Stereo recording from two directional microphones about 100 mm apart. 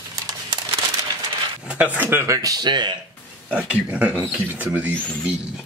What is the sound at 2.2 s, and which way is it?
Speech, 35° right (ahead or behind).